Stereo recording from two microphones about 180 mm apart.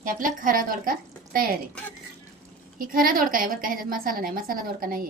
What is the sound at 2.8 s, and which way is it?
A woman's voice, 50° right (ahead or behind).